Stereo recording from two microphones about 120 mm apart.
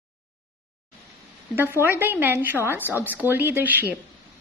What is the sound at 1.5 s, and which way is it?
Speech, 20° right (ahead or behind).